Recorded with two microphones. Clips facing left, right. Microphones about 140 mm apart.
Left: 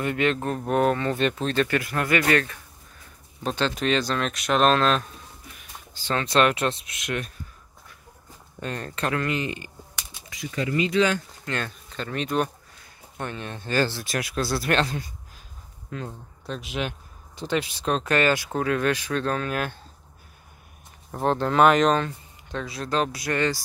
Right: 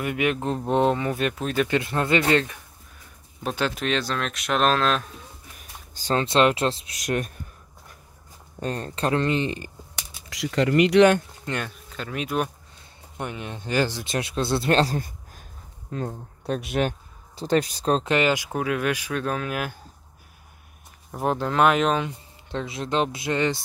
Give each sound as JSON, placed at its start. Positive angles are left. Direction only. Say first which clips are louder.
{"t": 0.0, "sound": "speech", "louder": "even", "side_deg": -10}
{"t": 1.7, "sound": "speech", "louder": "right 2 dB", "side_deg": -25}
{"t": 3.4, "sound": "speech", "louder": "left 1 dB", "side_deg": -5}
{"t": 5.6, "sound": "a sound", "louder": "even", "side_deg": -40}
{"t": 6.2, "sound": "speech", "louder": "right 1 dB", "side_deg": -25}
{"t": 8.5, "sound": "speech", "louder": "right 2 dB", "side_deg": -35}
{"t": 10.3, "sound": "speech", "louder": "right 6 dB", "side_deg": -85}
{"t": 11.4, "sound": "speech", "louder": "even", "side_deg": -10}
{"t": 15.0, "sound": "a sound", "louder": "right 4 dB", "side_deg": -50}
{"t": 15.9, "sound": "speech", "louder": "right 4 dB", "side_deg": -40}
{"t": 16.4, "sound": "speech", "louder": "right 6 dB", "side_deg": -55}
{"t": 18.0, "sound": "speech", "louder": "even", "side_deg": -15}
{"t": 21.1, "sound": "speech", "louder": "left 1 dB", "side_deg": -5}
{"t": 22.5, "sound": "speech", "louder": "right 1 dB", "side_deg": -25}